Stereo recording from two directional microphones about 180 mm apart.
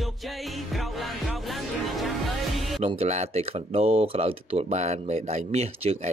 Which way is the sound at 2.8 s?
35° right (ahead or behind).